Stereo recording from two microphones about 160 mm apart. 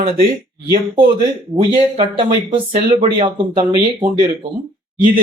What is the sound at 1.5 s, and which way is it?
Speech, 35° right (ahead or behind).